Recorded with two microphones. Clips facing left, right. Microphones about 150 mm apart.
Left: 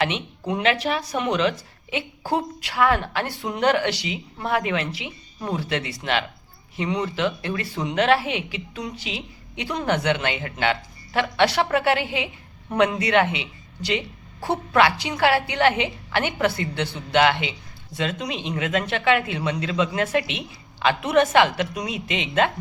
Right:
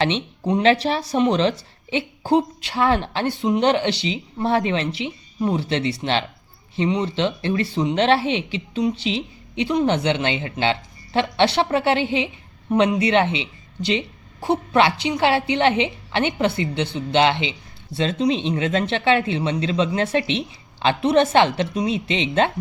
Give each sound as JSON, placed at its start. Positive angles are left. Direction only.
{"t": 0.0, "sound": "speech", "side_deg": -25}